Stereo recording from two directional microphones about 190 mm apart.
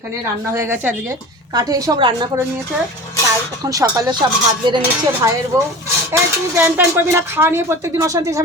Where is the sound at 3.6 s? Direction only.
20° right (ahead or behind).